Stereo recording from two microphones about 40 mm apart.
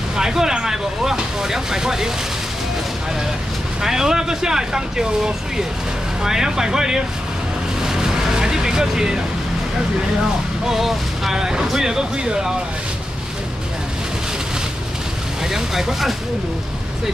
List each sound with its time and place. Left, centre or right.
0.1 s speech: centre
3.8 s speech: centre
7.8 s vehicle: centre
10.7 s speech: centre
15.5 s speech: centre